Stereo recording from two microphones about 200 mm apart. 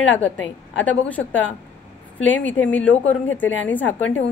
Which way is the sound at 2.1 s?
70° left (ahead or behind).